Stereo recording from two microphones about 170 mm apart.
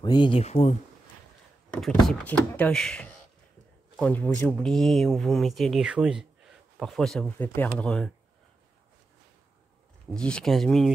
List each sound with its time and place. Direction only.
0.0 s speech: 25° left (ahead or behind)
2.0 s speech: 10° left (ahead or behind)
10.1 s speech: 5° left (ahead or behind)